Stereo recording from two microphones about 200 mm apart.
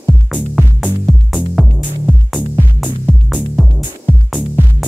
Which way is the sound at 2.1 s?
5° right (ahead or behind).